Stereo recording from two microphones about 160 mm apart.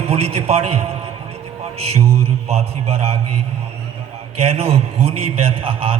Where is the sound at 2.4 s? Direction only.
40° right (ahead or behind).